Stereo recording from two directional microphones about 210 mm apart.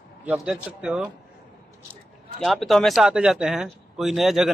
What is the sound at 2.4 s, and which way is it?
Speech, centre (ahead or behind).